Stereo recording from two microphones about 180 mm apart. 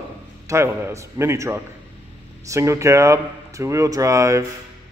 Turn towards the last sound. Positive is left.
turn(degrees=-15)  # may be behind; listen again after turning